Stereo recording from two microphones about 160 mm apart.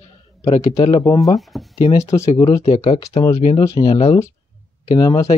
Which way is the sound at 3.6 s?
20° left (ahead or behind).